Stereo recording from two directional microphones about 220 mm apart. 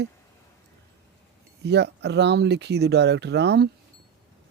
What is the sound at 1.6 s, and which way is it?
Speech, 50° right (ahead or behind).